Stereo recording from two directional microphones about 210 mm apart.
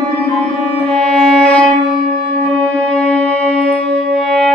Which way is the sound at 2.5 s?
5° left (ahead or behind).